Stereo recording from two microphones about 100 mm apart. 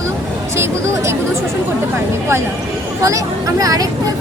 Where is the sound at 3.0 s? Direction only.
35° right (ahead or behind).